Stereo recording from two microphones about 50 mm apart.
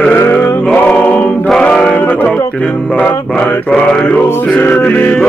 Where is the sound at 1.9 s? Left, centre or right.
Left.